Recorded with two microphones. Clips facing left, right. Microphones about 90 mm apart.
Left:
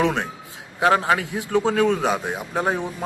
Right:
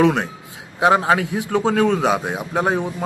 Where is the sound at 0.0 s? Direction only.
20° right (ahead or behind).